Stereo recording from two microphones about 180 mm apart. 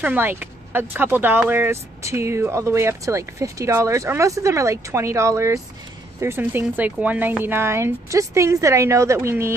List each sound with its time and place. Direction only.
0.0 s speech: 10° right (ahead or behind)